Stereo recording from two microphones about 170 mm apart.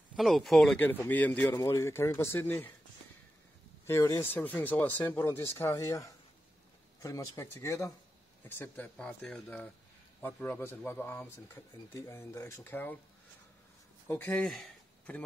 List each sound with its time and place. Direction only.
0.1 s a man's voice: centre (ahead or behind)
3.8 s a man's voice: 20° left (ahead or behind)
14.0 s speech: 10° left (ahead or behind)